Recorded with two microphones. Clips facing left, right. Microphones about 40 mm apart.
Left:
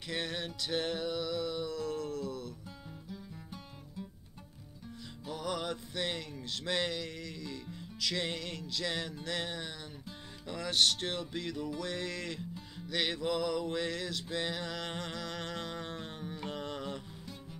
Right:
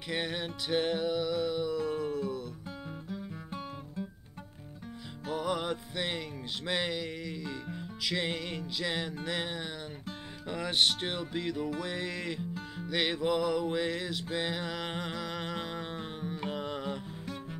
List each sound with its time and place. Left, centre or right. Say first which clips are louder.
0.1 s music: right 3 dB; centre
3.1 s guitar: right 5 dB; right
5.3 s music: right 4 dB; centre